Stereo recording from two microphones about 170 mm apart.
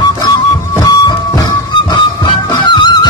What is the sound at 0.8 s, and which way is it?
Music, 25° left (ahead or behind).